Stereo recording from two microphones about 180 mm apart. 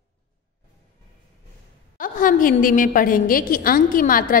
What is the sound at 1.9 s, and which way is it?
A woman's voice, 50° left (ahead or behind).